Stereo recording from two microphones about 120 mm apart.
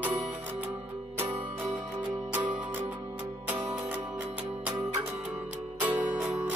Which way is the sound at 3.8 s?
15° right (ahead or behind).